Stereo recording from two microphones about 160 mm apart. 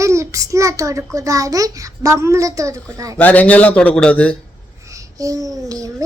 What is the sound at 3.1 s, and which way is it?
Speech, 10° left (ahead or behind).